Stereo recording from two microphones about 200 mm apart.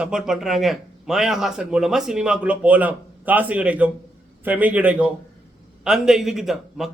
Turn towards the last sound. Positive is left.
turn(degrees=0)  # may be behind; listen again after turning